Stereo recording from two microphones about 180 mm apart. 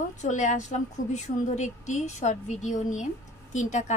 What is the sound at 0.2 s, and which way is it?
A woman's voice, 40° left (ahead or behind).